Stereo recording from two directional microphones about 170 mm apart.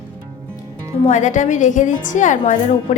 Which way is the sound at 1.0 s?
45° left (ahead or behind).